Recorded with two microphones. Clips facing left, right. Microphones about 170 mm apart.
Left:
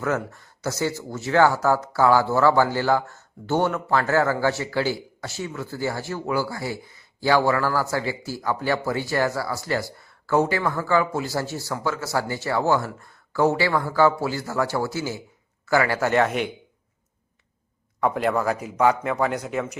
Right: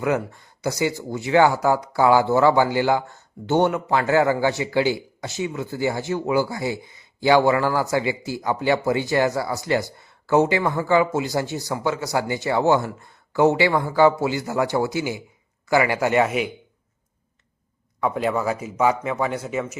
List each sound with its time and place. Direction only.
0.0 s speech: 15° right (ahead or behind)
18.0 s a man's voice: centre (ahead or behind)